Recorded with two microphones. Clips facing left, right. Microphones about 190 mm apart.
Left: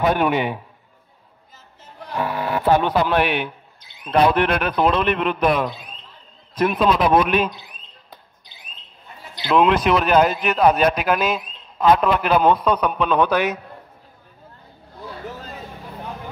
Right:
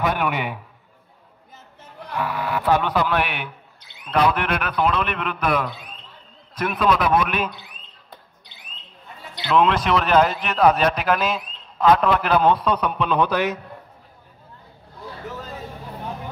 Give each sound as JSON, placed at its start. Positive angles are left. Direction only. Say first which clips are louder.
{"t": 0.0, "sound": "a man's voice", "louder": "left 4 dB", "side_deg": 25}
{"t": 2.1, "sound": "a man's voice", "louder": "left 2 dB", "side_deg": 30}
{"t": 9.5, "sound": "a man's voice", "louder": "left 2 dB", "side_deg": 15}